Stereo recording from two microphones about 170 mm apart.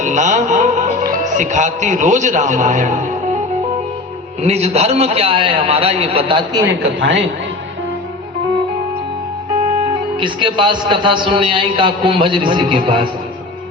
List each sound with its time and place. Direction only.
0.0 s music: 45° right (ahead or behind)
1.1 s a man's voice: 45° right (ahead or behind)
4.4 s a man's voice: 40° right (ahead or behind)
7.0 s a man's voice: 90° right
10.2 s a man's voice: 30° right (ahead or behind)